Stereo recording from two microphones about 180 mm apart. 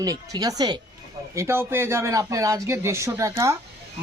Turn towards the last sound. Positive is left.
turn(degrees=-15)  # may be behind; listen again after turning